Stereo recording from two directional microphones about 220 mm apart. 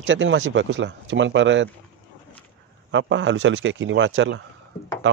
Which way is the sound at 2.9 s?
55° right (ahead or behind).